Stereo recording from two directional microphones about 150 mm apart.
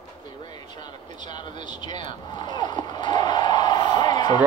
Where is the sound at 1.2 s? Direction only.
30° left (ahead or behind).